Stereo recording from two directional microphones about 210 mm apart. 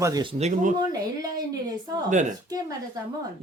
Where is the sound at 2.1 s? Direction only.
35° right (ahead or behind).